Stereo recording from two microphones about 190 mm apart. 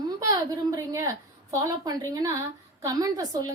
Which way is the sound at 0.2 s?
20° right (ahead or behind).